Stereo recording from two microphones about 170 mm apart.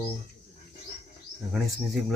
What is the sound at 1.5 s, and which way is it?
Speech, centre (ahead or behind).